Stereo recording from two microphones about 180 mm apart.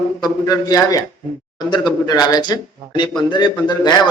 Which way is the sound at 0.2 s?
20° left (ahead or behind).